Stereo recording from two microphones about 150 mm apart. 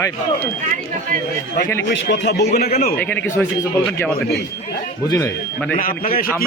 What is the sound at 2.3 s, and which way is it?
Speech, 90° left.